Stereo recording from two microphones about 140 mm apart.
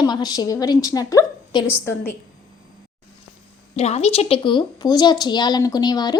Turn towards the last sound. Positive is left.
turn(degrees=30)  # may be behind; listen again after turning